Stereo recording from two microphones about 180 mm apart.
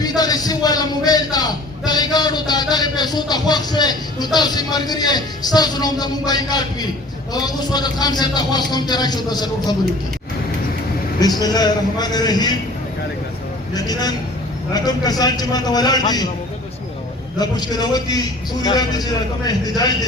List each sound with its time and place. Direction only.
0.0 s a man's voice: 20° left (ahead or behind)
11.2 s a man's voice: 20° left (ahead or behind)
13.7 s a man's voice: 20° left (ahead or behind)
17.3 s a man's voice: 20° left (ahead or behind)